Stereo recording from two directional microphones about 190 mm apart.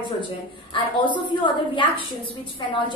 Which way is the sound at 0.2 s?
25° left (ahead or behind).